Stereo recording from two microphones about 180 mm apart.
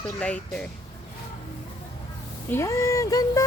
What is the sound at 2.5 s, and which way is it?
Speech, 15° left (ahead or behind).